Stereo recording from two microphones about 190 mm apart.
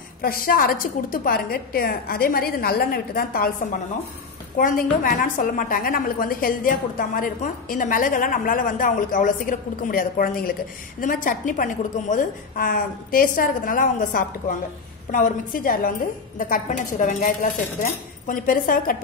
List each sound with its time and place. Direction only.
0.2 s a woman's voice: 50° left (ahead or behind)
4.6 s a woman's voice: 45° left (ahead or behind)